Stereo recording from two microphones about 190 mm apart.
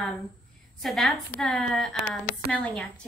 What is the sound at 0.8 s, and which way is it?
Speech, centre (ahead or behind).